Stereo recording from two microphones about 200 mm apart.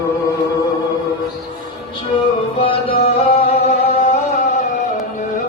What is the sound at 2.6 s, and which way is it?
Music, 25° left (ahead or behind).